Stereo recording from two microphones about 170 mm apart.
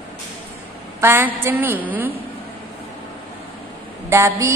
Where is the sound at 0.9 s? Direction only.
15° right (ahead or behind).